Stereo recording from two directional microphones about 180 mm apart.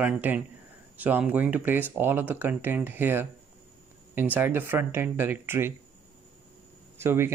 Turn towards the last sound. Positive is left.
turn(degrees=-15)  # may be behind; listen again after turning